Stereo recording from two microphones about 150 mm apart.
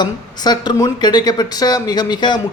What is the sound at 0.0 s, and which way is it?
Speech, 30° left (ahead or behind).